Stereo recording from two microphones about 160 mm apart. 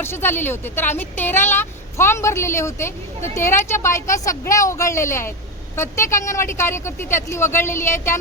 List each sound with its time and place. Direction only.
0.0 s speech: 15° left (ahead or behind)